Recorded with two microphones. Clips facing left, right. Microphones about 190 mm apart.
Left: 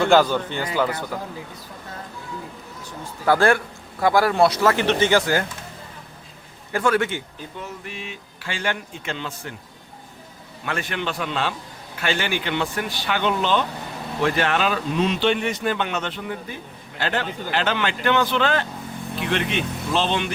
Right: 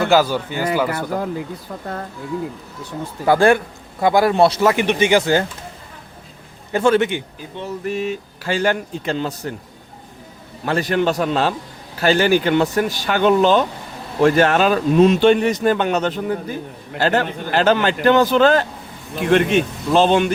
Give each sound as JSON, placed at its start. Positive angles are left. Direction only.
{"t": 0.0, "sound": "speech", "side_deg": -5}
{"t": 3.2, "sound": "speech", "side_deg": -15}
{"t": 4.7, "sound": "speech", "side_deg": -15}
{"t": 6.7, "sound": "speech", "side_deg": -25}
{"t": 7.6, "sound": "speech", "side_deg": -40}
{"t": 10.7, "sound": "speech", "side_deg": -35}